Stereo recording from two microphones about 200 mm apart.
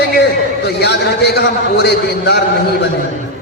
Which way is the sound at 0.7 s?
55° left (ahead or behind).